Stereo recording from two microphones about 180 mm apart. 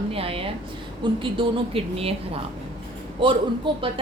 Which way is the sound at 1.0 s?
30° right (ahead or behind).